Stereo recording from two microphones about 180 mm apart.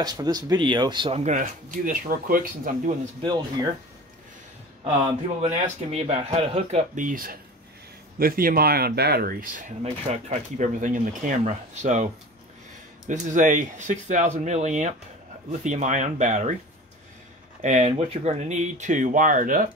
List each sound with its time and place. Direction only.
0.0 s speech: 20° right (ahead or behind)
1.2 s speech: 45° right (ahead or behind)
3.2 s speech: 25° right (ahead or behind)
5.5 s speech: 35° right (ahead or behind)
17.6 s speech: 45° right (ahead or behind)